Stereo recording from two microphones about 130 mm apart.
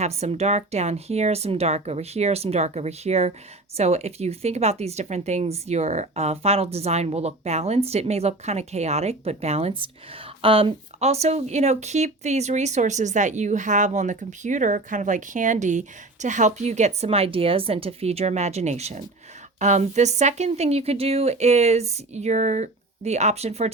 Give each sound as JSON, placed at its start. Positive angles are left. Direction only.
{"t": 0.0, "sound": "speech", "side_deg": -55}